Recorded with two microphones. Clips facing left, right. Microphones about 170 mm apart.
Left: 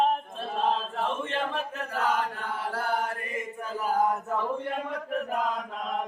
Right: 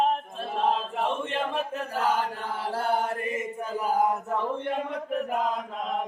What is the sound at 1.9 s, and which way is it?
Chant, 30° right (ahead or behind).